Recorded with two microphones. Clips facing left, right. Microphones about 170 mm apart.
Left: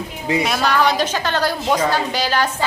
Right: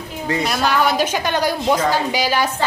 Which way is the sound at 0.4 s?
Centre (ahead or behind).